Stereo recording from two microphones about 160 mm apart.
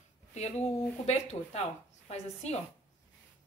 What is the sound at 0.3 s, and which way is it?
A woman's voice, 45° left (ahead or behind).